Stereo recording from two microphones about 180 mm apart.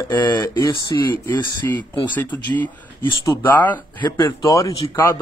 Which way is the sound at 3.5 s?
10° left (ahead or behind).